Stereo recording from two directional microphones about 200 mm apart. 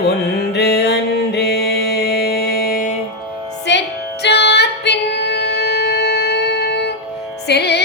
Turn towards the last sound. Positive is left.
turn(degrees=55)  # may be behind; listen again after turning